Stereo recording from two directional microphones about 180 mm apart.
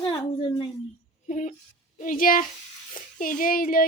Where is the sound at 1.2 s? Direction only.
45° left (ahead or behind).